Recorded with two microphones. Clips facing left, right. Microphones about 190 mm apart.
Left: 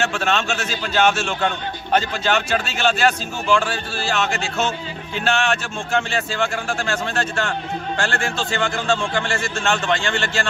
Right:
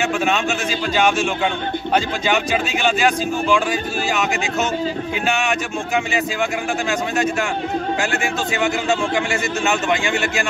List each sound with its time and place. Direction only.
0.0 s a man's voice: 5° right (ahead or behind)